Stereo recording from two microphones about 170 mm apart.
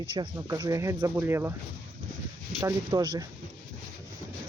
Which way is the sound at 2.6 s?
20° right (ahead or behind).